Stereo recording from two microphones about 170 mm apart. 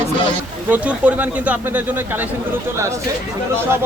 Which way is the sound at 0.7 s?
10° right (ahead or behind).